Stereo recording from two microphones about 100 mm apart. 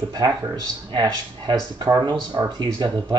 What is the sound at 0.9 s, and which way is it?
Speech, 50° right (ahead or behind).